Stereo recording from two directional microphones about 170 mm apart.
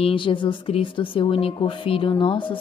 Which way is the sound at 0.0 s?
30° left (ahead or behind).